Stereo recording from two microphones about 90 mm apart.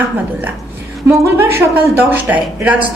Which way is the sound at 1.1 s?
30° right (ahead or behind).